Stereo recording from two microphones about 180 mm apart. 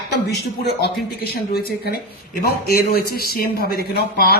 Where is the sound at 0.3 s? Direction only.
65° left (ahead or behind).